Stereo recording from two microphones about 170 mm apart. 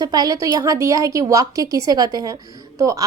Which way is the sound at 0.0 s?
25° right (ahead or behind).